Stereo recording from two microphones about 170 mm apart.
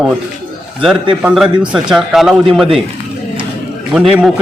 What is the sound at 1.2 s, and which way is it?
Speech, 5° right (ahead or behind).